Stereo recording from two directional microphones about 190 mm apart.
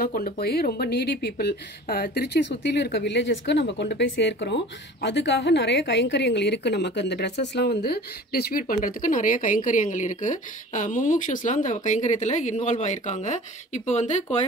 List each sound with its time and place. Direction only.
0.0 s speech: 50° left (ahead or behind)